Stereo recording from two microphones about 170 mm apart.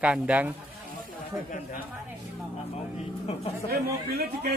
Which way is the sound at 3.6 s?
70° right (ahead or behind).